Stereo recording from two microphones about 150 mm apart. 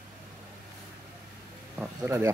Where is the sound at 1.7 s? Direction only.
20° right (ahead or behind).